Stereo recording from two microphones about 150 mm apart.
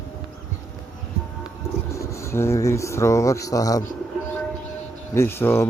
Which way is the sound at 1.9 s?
20° left (ahead or behind).